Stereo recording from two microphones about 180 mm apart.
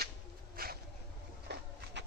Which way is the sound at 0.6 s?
55° right (ahead or behind).